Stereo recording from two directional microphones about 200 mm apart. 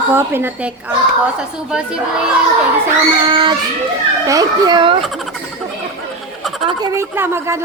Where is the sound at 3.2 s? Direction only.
25° right (ahead or behind).